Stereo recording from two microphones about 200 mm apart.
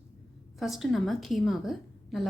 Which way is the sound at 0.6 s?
Centre (ahead or behind).